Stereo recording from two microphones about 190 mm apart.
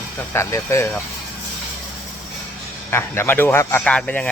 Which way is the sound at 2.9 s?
10° left (ahead or behind).